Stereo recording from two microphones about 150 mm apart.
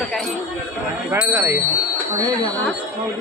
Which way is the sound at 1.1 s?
20° right (ahead or behind).